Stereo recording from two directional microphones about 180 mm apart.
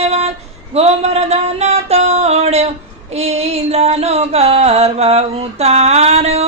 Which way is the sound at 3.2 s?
35° right (ahead or behind).